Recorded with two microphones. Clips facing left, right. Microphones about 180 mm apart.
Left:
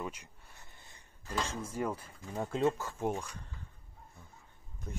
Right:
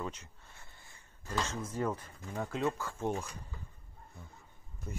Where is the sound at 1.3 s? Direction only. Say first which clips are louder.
Even; 10° left (ahead or behind).